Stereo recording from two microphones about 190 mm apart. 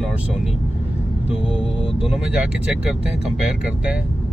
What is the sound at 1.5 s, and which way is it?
Speech, 30° left (ahead or behind).